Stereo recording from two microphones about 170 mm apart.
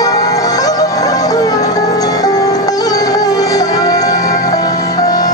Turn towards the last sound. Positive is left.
turn(degrees=20)  # may be behind; listen again after turning